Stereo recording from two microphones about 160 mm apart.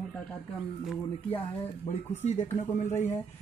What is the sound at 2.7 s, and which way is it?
Speech, 50° left (ahead or behind).